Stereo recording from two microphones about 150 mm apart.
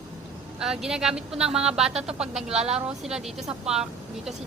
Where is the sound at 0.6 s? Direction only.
5° right (ahead or behind).